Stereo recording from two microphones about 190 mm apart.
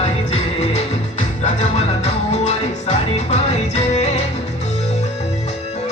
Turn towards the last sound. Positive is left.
turn(degrees=35)  # may be behind; listen again after turning